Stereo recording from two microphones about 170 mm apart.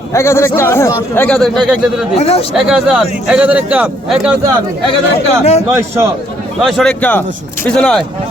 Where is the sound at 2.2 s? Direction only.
35° left (ahead or behind).